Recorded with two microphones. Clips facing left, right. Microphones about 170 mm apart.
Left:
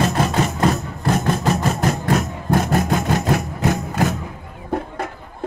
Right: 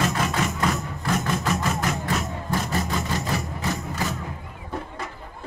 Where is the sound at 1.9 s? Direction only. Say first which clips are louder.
Left 7 dB; 45° left (ahead or behind).